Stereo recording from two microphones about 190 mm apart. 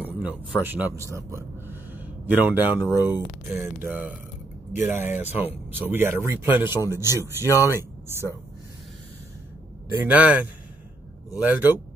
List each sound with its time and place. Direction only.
0.0 s a sound: 5° right (ahead or behind)
0.6 s a man's voice: 10° right (ahead or behind)
7.4 s speech: 15° left (ahead or behind)
9.9 s speech: 10° right (ahead or behind)